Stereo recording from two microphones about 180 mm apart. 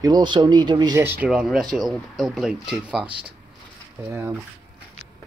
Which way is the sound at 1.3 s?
5° right (ahead or behind).